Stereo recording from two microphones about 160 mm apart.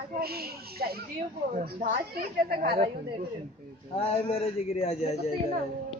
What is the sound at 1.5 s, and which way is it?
A woman's voice, 65° right (ahead or behind).